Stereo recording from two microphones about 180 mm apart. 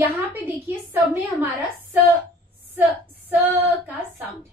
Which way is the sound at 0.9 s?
10° right (ahead or behind).